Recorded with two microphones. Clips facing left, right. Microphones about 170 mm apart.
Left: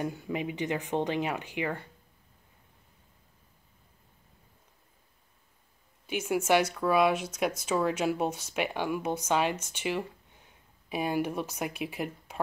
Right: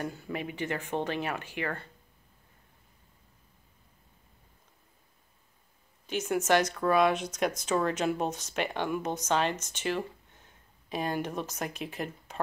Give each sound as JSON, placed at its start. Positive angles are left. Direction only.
{"t": 0.0, "sound": "speech", "side_deg": 15}
{"t": 6.0, "sound": "speech", "side_deg": 10}